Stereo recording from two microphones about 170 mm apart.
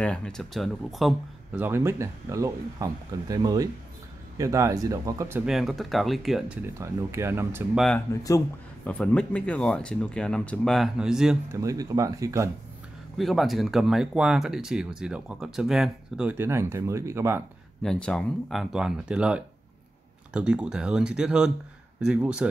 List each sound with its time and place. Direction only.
0.0 s speech: 5° left (ahead or behind)
1.6 s speech: 15° right (ahead or behind)
5.4 s speech: centre (ahead or behind)
6.6 s speech: 15° right (ahead or behind)
7.7 s speech: centre (ahead or behind)
8.1 s speech: 20° left (ahead or behind)
8.8 s speech: 5° left (ahead or behind)
11.5 s speech: 20° right (ahead or behind)
13.2 s speech: centre (ahead or behind); by 17.4 s 15° right (ahead or behind)
17.8 s speech: 5° left (ahead or behind)